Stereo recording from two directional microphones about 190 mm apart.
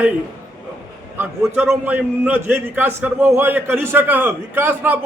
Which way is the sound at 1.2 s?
10° right (ahead or behind).